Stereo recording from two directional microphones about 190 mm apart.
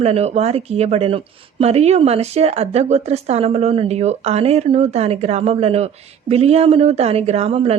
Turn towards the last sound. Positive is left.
turn(degrees=-30)  # may be behind; listen again after turning